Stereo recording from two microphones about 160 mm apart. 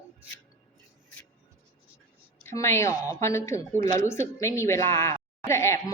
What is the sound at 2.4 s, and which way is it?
A woman's voice, 15° left (ahead or behind).